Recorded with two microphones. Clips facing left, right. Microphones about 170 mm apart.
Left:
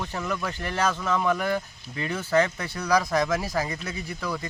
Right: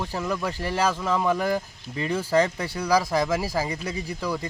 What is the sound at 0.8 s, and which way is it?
Speech, 10° right (ahead or behind).